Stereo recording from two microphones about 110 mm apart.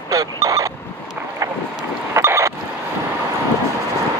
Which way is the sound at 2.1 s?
25° right (ahead or behind).